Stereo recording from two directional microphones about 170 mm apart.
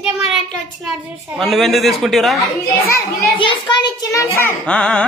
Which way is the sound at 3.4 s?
30° left (ahead or behind).